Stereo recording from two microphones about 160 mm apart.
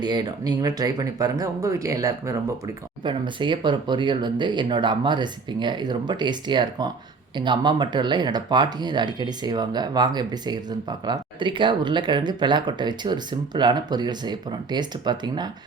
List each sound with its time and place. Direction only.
0.0 s speech: 25° right (ahead or behind)